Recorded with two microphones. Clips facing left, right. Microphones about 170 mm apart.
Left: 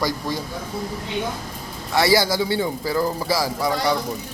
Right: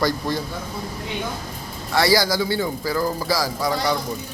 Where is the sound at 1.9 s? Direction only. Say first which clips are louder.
Even; 25° left (ahead or behind).